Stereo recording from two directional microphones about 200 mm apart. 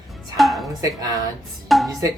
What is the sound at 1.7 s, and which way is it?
Speech, centre (ahead or behind).